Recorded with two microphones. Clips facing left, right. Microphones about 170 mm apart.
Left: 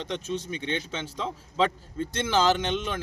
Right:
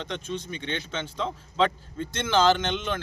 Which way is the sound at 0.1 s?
5° left (ahead or behind).